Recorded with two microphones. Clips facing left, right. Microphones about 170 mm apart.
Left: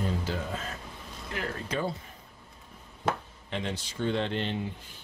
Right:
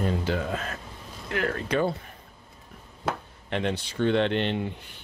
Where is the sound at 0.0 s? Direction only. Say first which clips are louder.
Right 5 dB; 70° right (ahead or behind).